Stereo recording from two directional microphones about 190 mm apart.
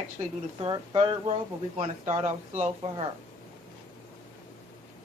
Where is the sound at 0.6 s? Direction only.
25° right (ahead or behind).